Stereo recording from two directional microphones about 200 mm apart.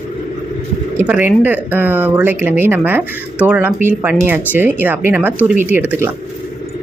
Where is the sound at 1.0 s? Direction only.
10° right (ahead or behind).